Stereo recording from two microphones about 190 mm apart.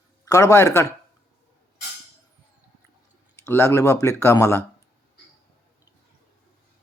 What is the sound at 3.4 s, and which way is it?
Speech, 15° left (ahead or behind).